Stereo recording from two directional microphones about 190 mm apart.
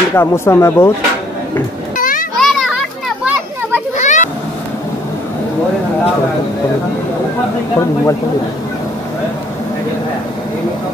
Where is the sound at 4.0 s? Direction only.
40° left (ahead or behind).